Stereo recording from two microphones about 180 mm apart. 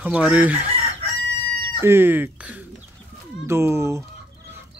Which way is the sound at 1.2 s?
90° right.